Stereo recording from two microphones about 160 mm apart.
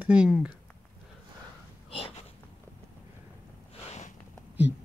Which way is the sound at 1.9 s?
40° left (ahead or behind).